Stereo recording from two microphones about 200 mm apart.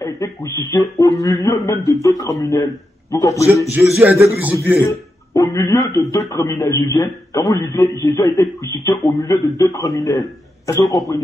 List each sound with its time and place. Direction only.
0.0 s a sound: 20° left (ahead or behind)
0.9 s a man's voice: 20° left (ahead or behind)
3.7 s a man's voice: centre (ahead or behind)
4.8 s a man's voice: 15° left (ahead or behind)